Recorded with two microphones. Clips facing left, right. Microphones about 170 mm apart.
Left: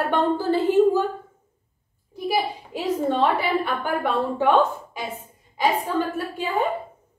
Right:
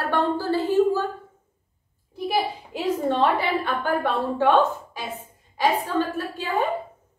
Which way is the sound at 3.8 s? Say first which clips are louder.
Even; 15° left (ahead or behind).